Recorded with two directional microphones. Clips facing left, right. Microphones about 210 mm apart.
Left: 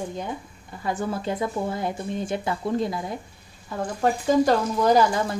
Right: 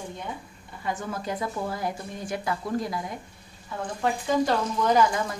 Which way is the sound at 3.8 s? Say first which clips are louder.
Left 4 dB; 40° left (ahead or behind).